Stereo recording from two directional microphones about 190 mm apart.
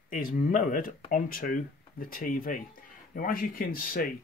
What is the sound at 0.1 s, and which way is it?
Speech, 45° left (ahead or behind).